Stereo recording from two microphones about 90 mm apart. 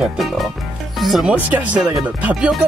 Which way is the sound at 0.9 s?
Centre (ahead or behind).